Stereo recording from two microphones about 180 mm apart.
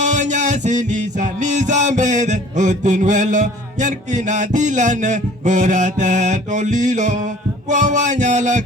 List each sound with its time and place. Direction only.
0.0 s music: 45° right (ahead or behind)